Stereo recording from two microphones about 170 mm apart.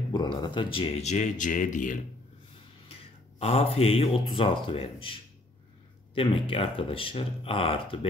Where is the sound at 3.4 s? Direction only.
35° left (ahead or behind).